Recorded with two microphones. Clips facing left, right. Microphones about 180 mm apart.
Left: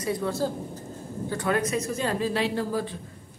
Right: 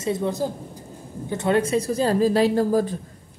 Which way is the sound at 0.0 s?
20° right (ahead or behind).